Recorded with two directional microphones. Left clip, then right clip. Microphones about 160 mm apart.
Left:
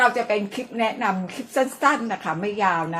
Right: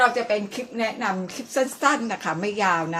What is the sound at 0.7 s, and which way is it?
Speech, 20° left (ahead or behind).